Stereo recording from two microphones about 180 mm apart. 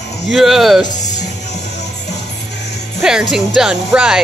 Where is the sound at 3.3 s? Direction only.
5° right (ahead or behind).